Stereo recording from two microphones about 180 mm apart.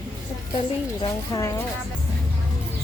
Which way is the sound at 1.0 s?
20° left (ahead or behind).